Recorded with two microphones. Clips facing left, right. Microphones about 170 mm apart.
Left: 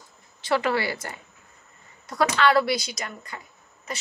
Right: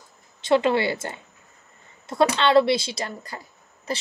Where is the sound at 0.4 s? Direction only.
20° right (ahead or behind).